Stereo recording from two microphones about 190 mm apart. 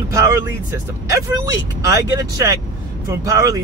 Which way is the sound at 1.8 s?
15° right (ahead or behind).